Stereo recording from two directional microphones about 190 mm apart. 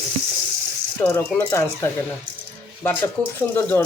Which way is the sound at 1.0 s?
15° left (ahead or behind).